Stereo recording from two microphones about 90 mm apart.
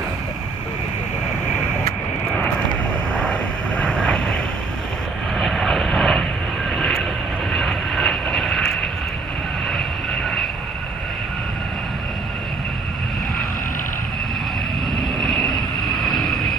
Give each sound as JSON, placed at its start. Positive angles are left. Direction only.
{"t": 3.2, "sound": "vehicle", "side_deg": 10}
{"t": 5.4, "sound": "vehicle", "side_deg": 0}
{"t": 15.1, "sound": "vehicle", "side_deg": 5}